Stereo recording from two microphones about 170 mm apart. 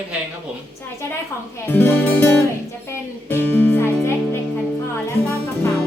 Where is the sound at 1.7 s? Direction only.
10° left (ahead or behind).